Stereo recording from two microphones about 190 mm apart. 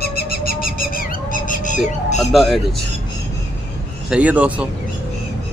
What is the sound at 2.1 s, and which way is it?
Speech, centre (ahead or behind).